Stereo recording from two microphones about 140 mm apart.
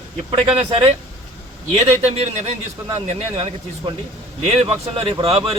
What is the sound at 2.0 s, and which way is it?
Speech, 50° right (ahead or behind).